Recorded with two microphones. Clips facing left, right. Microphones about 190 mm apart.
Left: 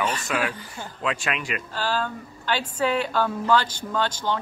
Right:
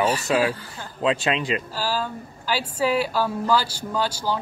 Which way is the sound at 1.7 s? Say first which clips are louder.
Even; 10° right (ahead or behind).